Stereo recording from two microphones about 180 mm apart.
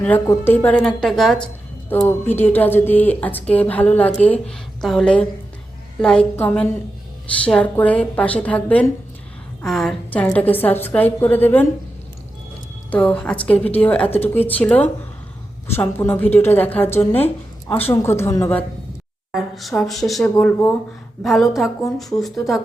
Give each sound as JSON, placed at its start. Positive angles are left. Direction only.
{"t": 0.0, "sound": "speech", "side_deg": 10}
{"t": 12.9, "sound": "speech", "side_deg": 5}
{"t": 19.3, "sound": "speech", "side_deg": 0}
{"t": 21.2, "sound": "speech", "side_deg": 0}